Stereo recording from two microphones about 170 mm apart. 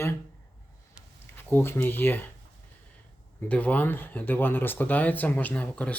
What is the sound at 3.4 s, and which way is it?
Speech, 10° left (ahead or behind).